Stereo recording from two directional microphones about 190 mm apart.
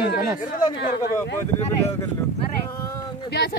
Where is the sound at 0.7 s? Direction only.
60° left (ahead or behind).